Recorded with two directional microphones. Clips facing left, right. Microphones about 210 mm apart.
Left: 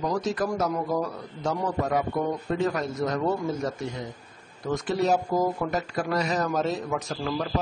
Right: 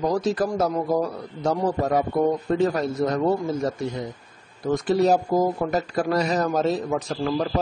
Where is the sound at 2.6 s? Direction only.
30° right (ahead or behind).